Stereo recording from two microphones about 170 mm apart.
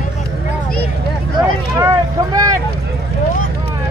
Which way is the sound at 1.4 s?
20° right (ahead or behind).